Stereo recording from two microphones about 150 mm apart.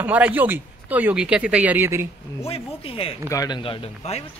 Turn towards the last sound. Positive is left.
turn(degrees=45)  # may be behind; listen again after turning